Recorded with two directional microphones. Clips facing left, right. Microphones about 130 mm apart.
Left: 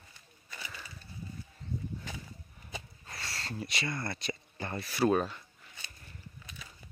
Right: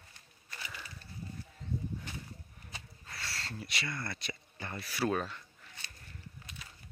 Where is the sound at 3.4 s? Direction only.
20° left (ahead or behind).